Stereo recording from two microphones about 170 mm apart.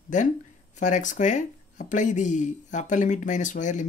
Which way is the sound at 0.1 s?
45° left (ahead or behind).